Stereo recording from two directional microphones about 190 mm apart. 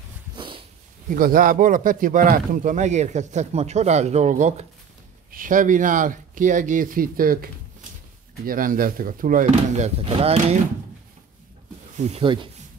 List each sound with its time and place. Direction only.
0.4 s dog: 25° right (ahead or behind)
1.0 s speech: 45° right (ahead or behind)
12.0 s speech: 30° right (ahead or behind)